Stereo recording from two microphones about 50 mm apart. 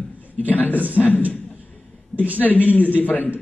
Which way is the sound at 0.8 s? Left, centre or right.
Right.